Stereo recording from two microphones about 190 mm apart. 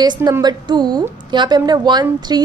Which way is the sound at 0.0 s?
20° right (ahead or behind).